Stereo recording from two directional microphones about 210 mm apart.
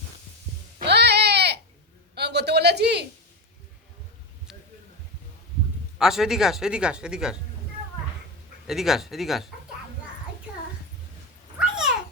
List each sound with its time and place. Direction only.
0.9 s sheep: 55° right (ahead or behind)
2.1 s a sound: 50° right (ahead or behind)
6.0 s speech: centre (ahead or behind)
8.6 s speech: centre (ahead or behind)
10.5 s a sound: 5° right (ahead or behind)
11.6 s cat: 5° right (ahead or behind)